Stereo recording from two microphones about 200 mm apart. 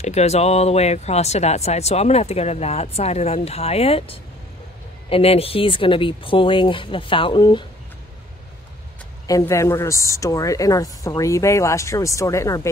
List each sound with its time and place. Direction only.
0.0 s speech: 35° left (ahead or behind)
9.3 s speech: 15° left (ahead or behind)